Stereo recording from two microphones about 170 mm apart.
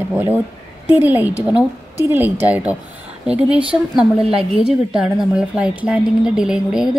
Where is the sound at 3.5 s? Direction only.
30° right (ahead or behind).